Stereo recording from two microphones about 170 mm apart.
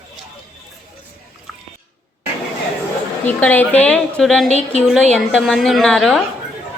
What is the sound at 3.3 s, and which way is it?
A woman's voice, 10° left (ahead or behind).